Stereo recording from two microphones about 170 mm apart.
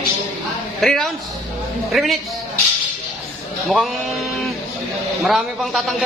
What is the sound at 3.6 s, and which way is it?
A woman's voice, centre (ahead or behind).